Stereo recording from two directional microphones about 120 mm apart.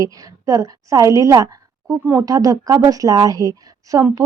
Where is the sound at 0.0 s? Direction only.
30° right (ahead or behind).